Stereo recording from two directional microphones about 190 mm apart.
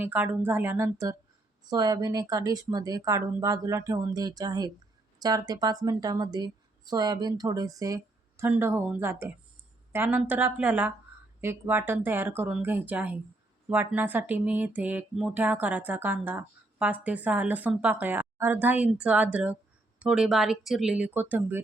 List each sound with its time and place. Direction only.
0.0 s a woman's voice: 10° right (ahead or behind)